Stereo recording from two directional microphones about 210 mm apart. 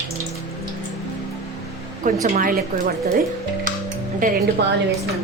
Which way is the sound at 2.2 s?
40° right (ahead or behind).